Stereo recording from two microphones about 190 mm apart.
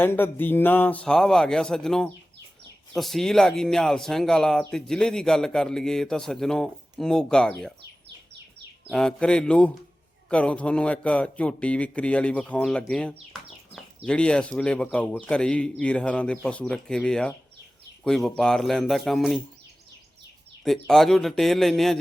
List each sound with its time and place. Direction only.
0.0 s speech: 10° left (ahead or behind)
8.0 s bird: 65° right (ahead or behind)
8.9 s a man's voice: 5° left (ahead or behind)
20.7 s speech: centre (ahead or behind)